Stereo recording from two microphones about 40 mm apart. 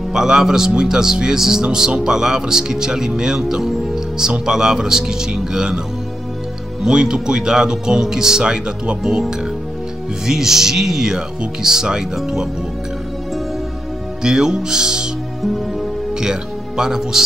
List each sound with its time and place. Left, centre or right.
0.1 s speech: centre
3.3 s music: centre
4.5 s speech: centre
6.8 s speech: centre
10.2 s speech: centre
14.2 s speech: centre
16.2 s speech: centre